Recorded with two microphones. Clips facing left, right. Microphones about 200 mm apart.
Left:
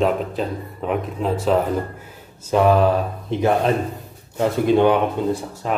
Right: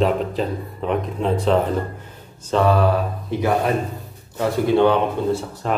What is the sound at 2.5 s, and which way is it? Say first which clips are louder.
Speech: left 2 dB; 15° left (ahead or behind).